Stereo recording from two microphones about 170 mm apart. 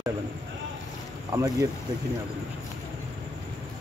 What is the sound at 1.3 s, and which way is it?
Speech, 20° right (ahead or behind).